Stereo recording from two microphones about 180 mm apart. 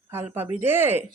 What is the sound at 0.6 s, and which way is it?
Speech, 10° right (ahead or behind).